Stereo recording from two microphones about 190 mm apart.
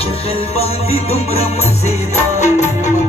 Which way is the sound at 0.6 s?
35° left (ahead or behind).